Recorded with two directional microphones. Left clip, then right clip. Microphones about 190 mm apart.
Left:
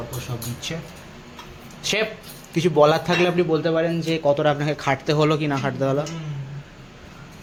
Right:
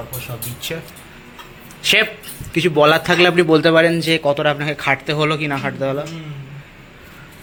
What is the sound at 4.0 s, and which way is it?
Speech, centre (ahead or behind).